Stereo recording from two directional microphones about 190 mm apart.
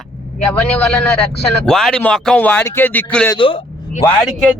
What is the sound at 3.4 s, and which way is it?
Speech, 25° left (ahead or behind).